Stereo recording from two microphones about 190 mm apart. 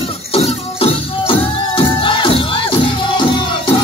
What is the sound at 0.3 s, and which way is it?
Music, 30° left (ahead or behind).